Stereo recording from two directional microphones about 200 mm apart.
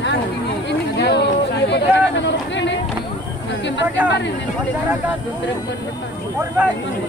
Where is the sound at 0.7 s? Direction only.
60° left (ahead or behind).